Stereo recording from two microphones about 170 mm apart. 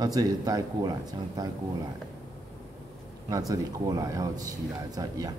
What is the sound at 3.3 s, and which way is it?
A man's voice, 20° right (ahead or behind).